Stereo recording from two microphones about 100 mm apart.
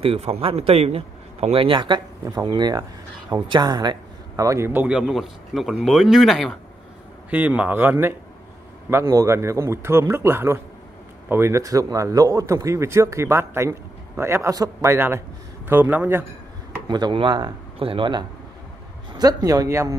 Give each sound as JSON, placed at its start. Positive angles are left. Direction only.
{"t": 0.0, "sound": "a man's voice", "side_deg": -80}
{"t": 4.5, "sound": "a man's voice", "side_deg": -25}
{"t": 4.8, "sound": "speech", "side_deg": -10}
{"t": 7.2, "sound": "a man's voice", "side_deg": -15}
{"t": 14.9, "sound": "a man's voice", "side_deg": -25}
{"t": 16.8, "sound": "speech", "side_deg": -50}
{"t": 17.7, "sound": "speech", "side_deg": -60}
{"t": 19.1, "sound": "speech", "side_deg": -40}